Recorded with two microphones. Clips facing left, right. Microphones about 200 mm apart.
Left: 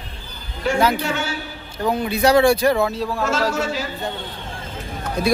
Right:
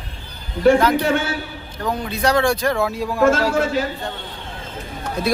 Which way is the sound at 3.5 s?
55° right (ahead or behind).